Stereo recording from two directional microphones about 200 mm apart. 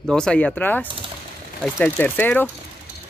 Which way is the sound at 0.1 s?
5° left (ahead or behind).